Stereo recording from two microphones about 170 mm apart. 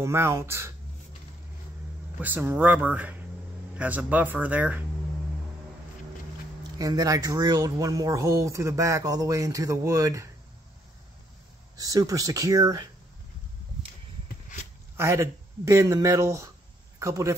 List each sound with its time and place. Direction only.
0.0 s speech: 15° right (ahead or behind)
2.1 s speech: 10° right (ahead or behind)
6.8 s speech: 20° right (ahead or behind)
11.7 s speech: 20° right (ahead or behind)
15.0 s speech: 15° right (ahead or behind)